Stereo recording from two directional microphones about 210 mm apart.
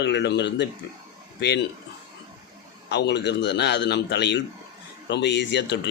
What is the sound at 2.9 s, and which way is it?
Speech, 55° left (ahead or behind).